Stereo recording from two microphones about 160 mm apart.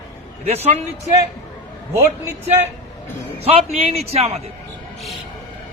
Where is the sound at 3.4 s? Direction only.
40° right (ahead or behind).